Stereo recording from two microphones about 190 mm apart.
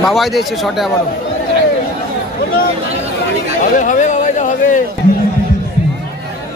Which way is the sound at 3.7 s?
40° left (ahead or behind).